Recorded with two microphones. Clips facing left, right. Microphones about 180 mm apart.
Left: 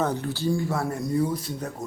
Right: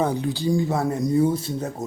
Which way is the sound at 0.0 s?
15° right (ahead or behind).